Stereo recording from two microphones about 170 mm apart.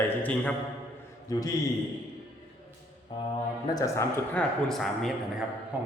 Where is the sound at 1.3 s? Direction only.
20° left (ahead or behind).